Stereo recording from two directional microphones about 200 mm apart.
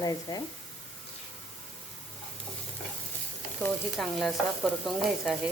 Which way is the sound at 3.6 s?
Centre (ahead or behind).